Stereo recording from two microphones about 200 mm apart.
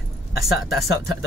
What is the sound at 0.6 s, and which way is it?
Speech, 50° left (ahead or behind).